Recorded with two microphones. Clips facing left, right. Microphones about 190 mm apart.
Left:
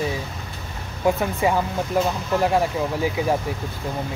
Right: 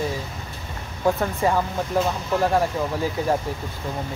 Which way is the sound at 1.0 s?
10° left (ahead or behind).